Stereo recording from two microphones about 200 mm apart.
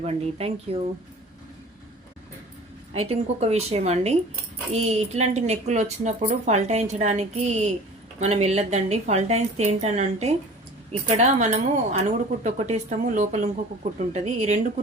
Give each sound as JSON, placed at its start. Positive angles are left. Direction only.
{"t": 0.0, "sound": "a woman's voice", "side_deg": -30}
{"t": 2.9, "sound": "a woman's voice", "side_deg": -30}